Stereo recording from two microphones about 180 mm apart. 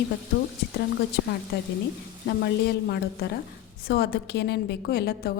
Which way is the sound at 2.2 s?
65° left (ahead or behind).